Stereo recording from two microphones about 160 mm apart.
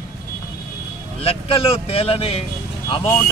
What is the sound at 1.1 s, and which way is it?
A man's voice, 35° left (ahead or behind).